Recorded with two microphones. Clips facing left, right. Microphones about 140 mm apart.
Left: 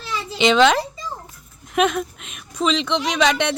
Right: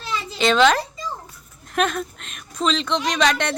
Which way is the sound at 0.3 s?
15° left (ahead or behind).